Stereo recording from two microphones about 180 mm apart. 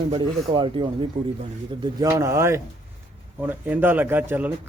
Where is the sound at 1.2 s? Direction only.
45° right (ahead or behind).